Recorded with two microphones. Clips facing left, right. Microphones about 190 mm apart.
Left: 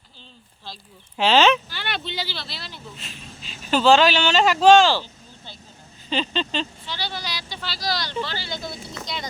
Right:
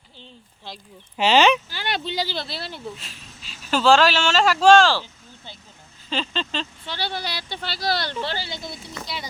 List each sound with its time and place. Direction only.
0.2 s a sound: 20° right (ahead or behind)
1.1 s speech: 10° right (ahead or behind)
1.7 s speech: 35° right (ahead or behind); by 2.8 s 55° right (ahead or behind)
3.7 s speech: centre (ahead or behind)
6.1 s speech: centre (ahead or behind)
6.8 s speech: 60° right (ahead or behind)
8.6 s speech: 5° right (ahead or behind)